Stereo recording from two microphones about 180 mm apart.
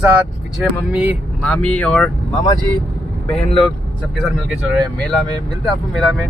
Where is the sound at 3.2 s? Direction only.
5° left (ahead or behind).